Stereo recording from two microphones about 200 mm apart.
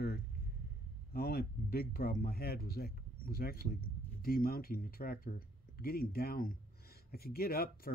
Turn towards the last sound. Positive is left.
turn(degrees=50)  # may be behind; listen again after turning